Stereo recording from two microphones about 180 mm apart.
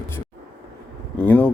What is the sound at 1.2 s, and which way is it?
Speech, 10° left (ahead or behind).